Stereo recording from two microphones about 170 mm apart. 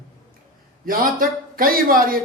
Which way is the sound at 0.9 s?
55° right (ahead or behind).